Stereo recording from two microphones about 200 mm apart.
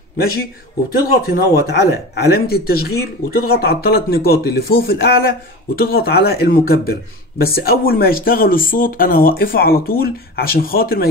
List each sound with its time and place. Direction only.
0.9 s speech: 50° left (ahead or behind)